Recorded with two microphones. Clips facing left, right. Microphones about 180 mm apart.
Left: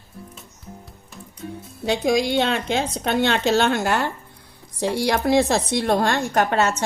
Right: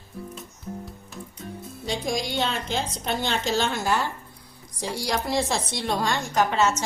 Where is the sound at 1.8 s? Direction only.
65° left (ahead or behind).